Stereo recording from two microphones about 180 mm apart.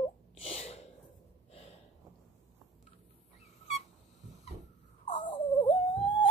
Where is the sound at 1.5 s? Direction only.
35° left (ahead or behind).